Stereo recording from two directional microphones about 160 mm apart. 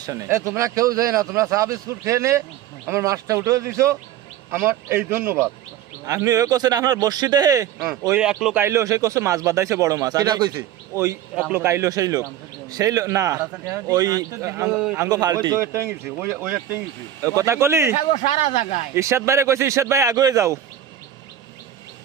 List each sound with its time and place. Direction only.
0.0 s a man's voice: 20° right (ahead or behind)
8.1 s a man's voice: 5° right (ahead or behind)
8.5 s speech: 15° right (ahead or behind)
11.3 s a man's voice: 5° right (ahead or behind)
11.6 s speech: 15° right (ahead or behind)
14.7 s a man's voice: 5° right (ahead or behind)
14.9 s a man's voice: 20° right (ahead or behind)
17.2 s a man's voice: 20° right (ahead or behind)
17.9 s speech: 50° left (ahead or behind)
18.9 s speech: 20° right (ahead or behind)